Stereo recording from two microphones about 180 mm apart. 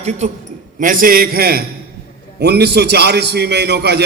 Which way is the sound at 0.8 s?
50° right (ahead or behind).